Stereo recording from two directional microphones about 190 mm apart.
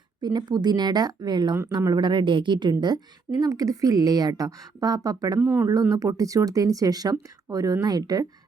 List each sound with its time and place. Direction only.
0.2 s a woman's voice: 20° right (ahead or behind)